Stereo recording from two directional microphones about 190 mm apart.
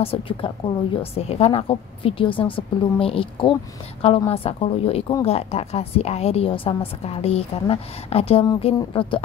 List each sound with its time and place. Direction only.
0.0 s a woman's voice: 30° left (ahead or behind)